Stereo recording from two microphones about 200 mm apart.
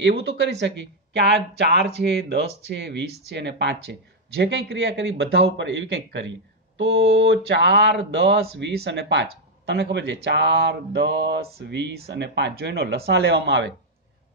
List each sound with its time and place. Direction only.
0.0 s speech: 60° right (ahead or behind)